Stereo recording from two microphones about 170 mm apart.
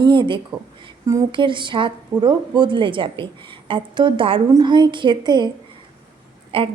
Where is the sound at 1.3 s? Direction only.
30° right (ahead or behind).